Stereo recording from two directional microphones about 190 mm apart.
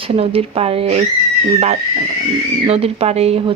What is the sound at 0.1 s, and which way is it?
Speech, 30° right (ahead or behind).